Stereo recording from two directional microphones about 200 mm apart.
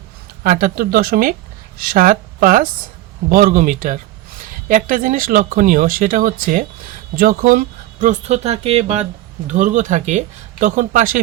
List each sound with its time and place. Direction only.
0.4 s speech: 45° right (ahead or behind)